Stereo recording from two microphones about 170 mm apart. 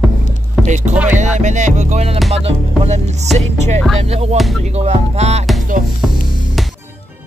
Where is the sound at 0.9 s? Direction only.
10° right (ahead or behind).